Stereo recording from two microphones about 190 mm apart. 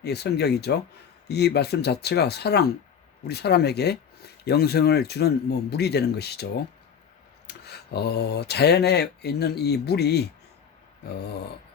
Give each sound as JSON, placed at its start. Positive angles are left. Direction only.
{"t": 0.0, "sound": "speech", "side_deg": 60}